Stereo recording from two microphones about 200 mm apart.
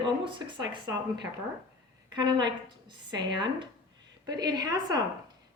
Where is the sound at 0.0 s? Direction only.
25° right (ahead or behind).